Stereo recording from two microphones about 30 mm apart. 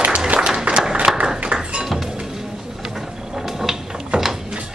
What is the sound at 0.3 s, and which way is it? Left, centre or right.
Applause, right.